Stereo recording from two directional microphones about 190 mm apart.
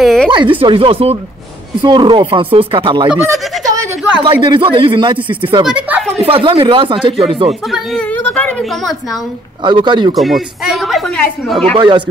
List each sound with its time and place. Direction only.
0.0 s a sound: centre (ahead or behind)
0.3 s speech: 25° right (ahead or behind)
3.1 s speech: 5° right (ahead or behind)
3.6 s a sound: 15° right (ahead or behind)
4.2 s speech: 25° right (ahead or behind)
5.7 s a sound: 5° right (ahead or behind)
6.1 s speech: 30° right (ahead or behind)
7.6 s speech: centre (ahead or behind)
9.6 s speech: 25° right (ahead or behind)
10.1 s speech: centre (ahead or behind)
11.7 s speech: 25° right (ahead or behind)